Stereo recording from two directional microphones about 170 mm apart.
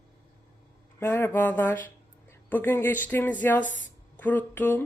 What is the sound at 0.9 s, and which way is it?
Speech, 15° left (ahead or behind).